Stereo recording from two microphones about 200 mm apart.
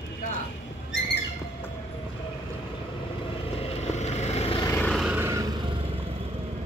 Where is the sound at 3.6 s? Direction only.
30° left (ahead or behind).